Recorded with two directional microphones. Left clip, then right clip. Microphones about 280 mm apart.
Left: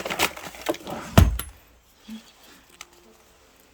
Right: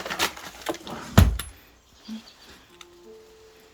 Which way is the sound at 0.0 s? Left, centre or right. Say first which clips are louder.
Left 2 dB; left.